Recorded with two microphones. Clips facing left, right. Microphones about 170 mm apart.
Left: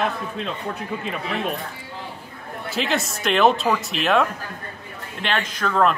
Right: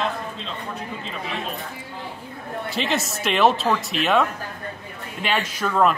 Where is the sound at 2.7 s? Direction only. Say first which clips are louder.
Left 2 dB; centre (ahead or behind).